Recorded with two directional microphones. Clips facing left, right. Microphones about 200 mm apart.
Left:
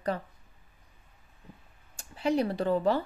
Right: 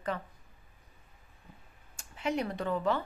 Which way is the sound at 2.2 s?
35° left (ahead or behind).